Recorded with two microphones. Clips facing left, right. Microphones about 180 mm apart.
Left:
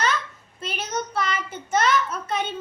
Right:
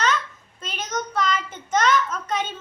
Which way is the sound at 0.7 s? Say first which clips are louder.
Even; 10° left (ahead or behind).